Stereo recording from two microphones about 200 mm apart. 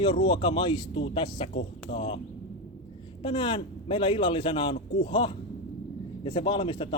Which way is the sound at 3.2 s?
25° left (ahead or behind).